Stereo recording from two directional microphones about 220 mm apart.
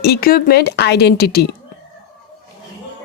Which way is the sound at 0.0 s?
45° left (ahead or behind).